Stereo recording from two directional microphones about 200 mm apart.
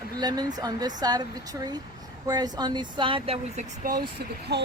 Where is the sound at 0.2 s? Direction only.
20° right (ahead or behind); by 4.0 s 40° right (ahead or behind).